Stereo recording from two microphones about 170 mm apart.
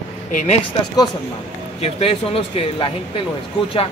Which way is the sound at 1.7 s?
35° left (ahead or behind).